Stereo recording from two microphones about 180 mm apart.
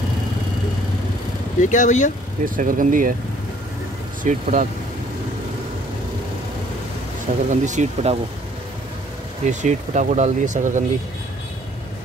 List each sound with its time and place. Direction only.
1.6 s speech: 45° left (ahead or behind)
2.4 s speech: 50° right (ahead or behind)
4.2 s speech: 45° right (ahead or behind)
7.4 s speech: 40° right (ahead or behind)
9.5 s speech: 40° right (ahead or behind)